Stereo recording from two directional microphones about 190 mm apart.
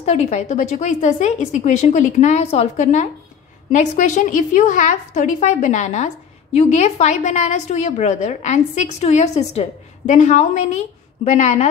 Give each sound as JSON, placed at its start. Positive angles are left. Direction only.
{"t": 0.0, "sound": "a woman's voice", "side_deg": 35}